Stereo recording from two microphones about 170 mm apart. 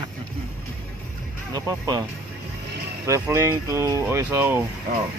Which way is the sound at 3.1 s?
15° right (ahead or behind).